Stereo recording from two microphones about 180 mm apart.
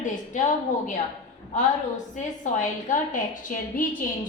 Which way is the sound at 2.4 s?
45° left (ahead or behind).